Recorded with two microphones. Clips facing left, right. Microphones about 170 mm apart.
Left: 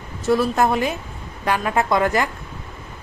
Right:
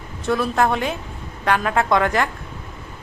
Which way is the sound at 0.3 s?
5° left (ahead or behind).